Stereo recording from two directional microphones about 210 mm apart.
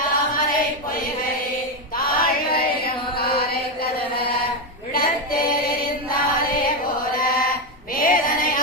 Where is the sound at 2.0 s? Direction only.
45° left (ahead or behind).